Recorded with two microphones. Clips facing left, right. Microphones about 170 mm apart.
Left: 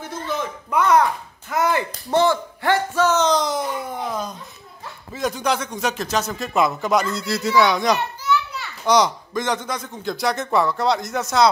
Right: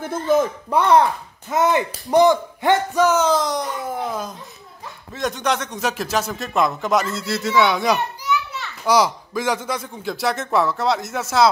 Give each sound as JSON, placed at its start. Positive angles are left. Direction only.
{"t": 0.0, "sound": "a man's voice", "side_deg": -50}
{"t": 0.7, "sound": "a man's voice", "side_deg": -30}